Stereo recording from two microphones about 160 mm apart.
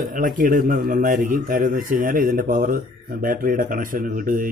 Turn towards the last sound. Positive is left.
turn(degrees=-60)  # may be behind; listen again after turning